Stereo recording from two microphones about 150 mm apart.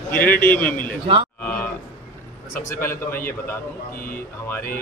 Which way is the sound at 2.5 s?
15° left (ahead or behind).